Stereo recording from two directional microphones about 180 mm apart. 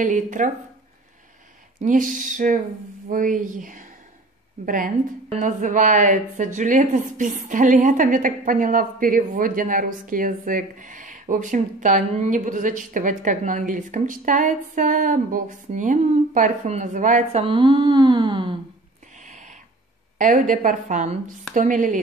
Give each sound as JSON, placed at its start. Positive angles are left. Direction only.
{"t": 0.0, "sound": "speech", "side_deg": -45}
{"t": 1.8, "sound": "speech", "side_deg": -45}
{"t": 19.1, "sound": "a sound", "side_deg": -45}
{"t": 20.2, "sound": "speech", "side_deg": -45}